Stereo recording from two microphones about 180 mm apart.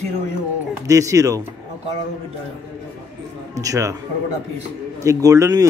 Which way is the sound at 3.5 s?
20° right (ahead or behind).